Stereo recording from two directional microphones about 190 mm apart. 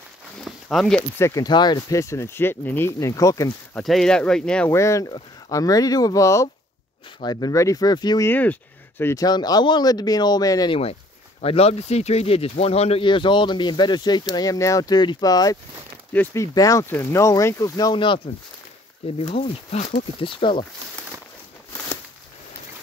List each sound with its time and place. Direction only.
0.5 s a sound: centre (ahead or behind)
1.1 s speech: 15° left (ahead or behind)
3.7 s speech: centre (ahead or behind)
4.6 s speech: 15° left (ahead or behind)
8.3 s speech: 10° left (ahead or behind)
11.4 s speech: 30° left (ahead or behind)
16.1 s speech: 10° left (ahead or behind); by 20.6 s 25° left (ahead or behind)